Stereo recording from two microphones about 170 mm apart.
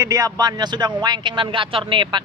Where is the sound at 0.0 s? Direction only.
20° right (ahead or behind).